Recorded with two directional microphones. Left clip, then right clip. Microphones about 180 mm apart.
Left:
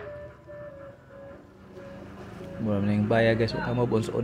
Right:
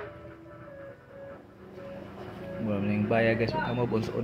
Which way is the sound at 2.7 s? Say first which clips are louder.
Left 3 dB; 30° left (ahead or behind).